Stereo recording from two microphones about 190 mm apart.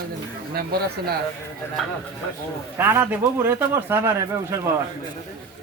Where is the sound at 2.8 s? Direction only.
10° right (ahead or behind).